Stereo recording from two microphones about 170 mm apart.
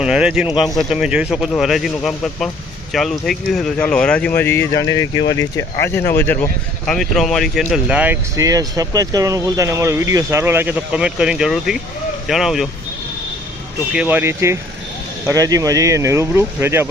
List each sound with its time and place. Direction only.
0.0 s speech: 5° right (ahead or behind)
13.9 s speech: 10° right (ahead or behind)